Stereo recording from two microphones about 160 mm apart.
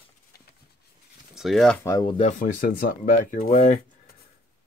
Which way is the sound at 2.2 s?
55° left (ahead or behind).